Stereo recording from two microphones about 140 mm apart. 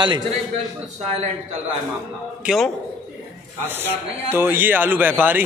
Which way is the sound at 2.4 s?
Centre (ahead or behind).